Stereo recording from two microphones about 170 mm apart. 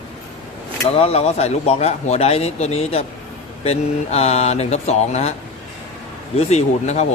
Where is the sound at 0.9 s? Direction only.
35° left (ahead or behind).